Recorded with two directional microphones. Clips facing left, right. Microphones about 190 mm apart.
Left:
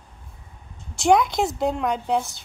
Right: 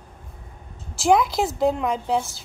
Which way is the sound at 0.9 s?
Centre (ahead or behind).